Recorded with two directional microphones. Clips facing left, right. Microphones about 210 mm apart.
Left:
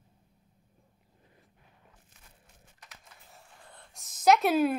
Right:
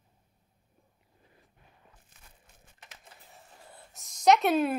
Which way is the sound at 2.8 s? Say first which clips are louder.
Right 2 dB; 25° right (ahead or behind).